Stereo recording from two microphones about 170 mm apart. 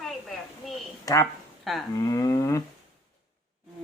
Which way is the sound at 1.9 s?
20° left (ahead or behind).